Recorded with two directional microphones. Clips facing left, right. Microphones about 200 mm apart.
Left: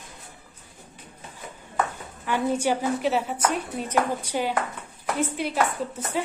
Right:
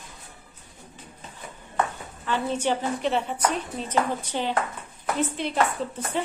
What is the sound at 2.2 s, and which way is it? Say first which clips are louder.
Speech: left 2 dB; 10° left (ahead or behind).